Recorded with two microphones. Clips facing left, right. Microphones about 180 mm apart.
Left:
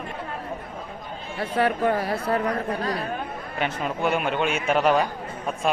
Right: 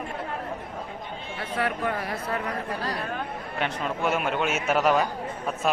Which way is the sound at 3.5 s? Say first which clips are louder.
Left 2 dB; centre (ahead or behind).